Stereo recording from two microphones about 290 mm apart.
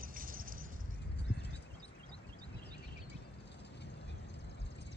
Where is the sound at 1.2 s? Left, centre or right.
Left.